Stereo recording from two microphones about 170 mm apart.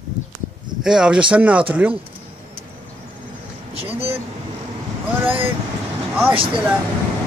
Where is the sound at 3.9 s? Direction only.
35° right (ahead or behind).